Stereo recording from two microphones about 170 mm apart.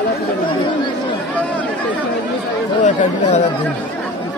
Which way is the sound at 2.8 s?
45° left (ahead or behind).